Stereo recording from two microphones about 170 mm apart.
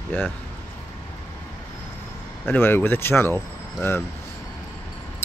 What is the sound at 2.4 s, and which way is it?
Speech, 10° left (ahead or behind).